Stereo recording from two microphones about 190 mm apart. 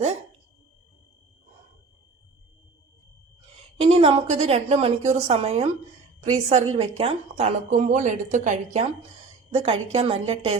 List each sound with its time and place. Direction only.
3.8 s a woman's voice: 30° right (ahead or behind)